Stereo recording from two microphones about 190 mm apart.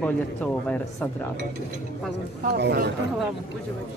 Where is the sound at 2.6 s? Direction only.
60° right (ahead or behind).